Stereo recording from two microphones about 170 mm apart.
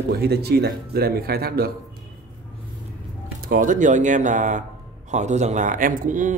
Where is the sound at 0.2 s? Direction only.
70° right (ahead or behind).